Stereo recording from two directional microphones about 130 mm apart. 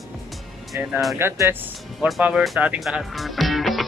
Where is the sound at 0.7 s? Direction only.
20° right (ahead or behind).